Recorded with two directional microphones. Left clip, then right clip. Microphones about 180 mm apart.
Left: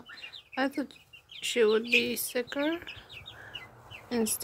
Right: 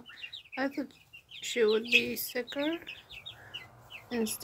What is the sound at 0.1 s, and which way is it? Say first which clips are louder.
Bird: left 2 dB; 15° left (ahead or behind).